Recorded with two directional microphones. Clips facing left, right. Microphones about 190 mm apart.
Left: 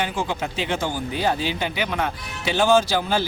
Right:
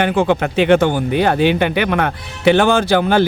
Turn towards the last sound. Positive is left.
turn(degrees=-60)  # may be behind; listen again after turning